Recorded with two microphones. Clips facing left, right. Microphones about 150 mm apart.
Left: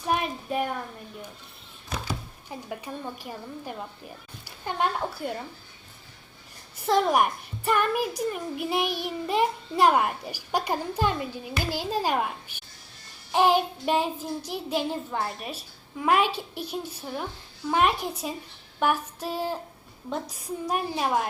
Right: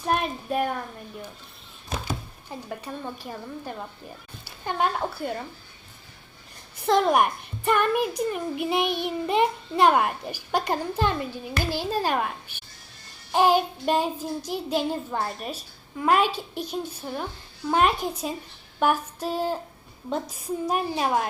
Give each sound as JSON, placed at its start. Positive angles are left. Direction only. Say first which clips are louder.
{"t": 1.9, "sound": "a sound", "louder": "right 2 dB", "side_deg": -25}
{"t": 2.5, "sound": "a child's voice", "louder": "right 1 dB", "side_deg": 10}
{"t": 6.8, "sound": "a child's voice", "louder": "right 2 dB", "side_deg": 0}
{"t": 14.2, "sound": "a child's voice", "louder": "right 2 dB", "side_deg": -40}
{"t": 14.7, "sound": "a child's voice", "louder": "right 2 dB", "side_deg": 0}